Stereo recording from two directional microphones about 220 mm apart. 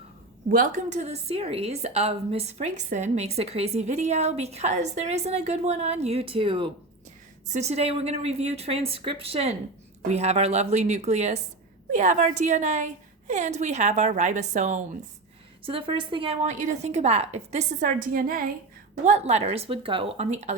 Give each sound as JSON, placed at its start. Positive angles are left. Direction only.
{"t": 0.4, "sound": "a woman's voice", "side_deg": -40}
{"t": 15.6, "sound": "a woman's voice", "side_deg": -20}